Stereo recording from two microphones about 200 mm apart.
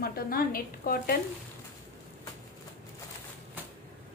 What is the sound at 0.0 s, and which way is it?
A woman's voice, 50° left (ahead or behind).